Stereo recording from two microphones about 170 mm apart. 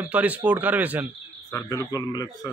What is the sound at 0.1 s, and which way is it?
Speech, 10° right (ahead or behind).